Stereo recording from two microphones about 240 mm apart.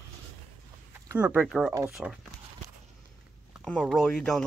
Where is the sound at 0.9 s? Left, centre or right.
Centre.